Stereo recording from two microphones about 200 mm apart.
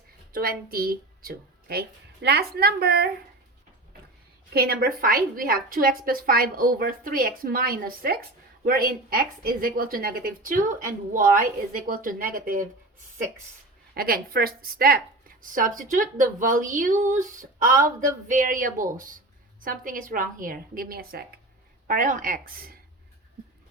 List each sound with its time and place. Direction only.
0.7 s speech: 50° right (ahead or behind)
4.5 s speech: 50° right (ahead or behind)
13.9 s speech: 45° right (ahead or behind)